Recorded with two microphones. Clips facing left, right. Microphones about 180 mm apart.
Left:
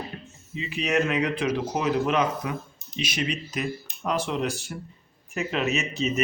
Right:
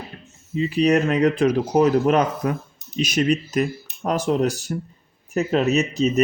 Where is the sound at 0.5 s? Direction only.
40° right (ahead or behind).